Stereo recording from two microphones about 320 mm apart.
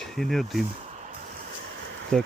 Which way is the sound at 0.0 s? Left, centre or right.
Centre.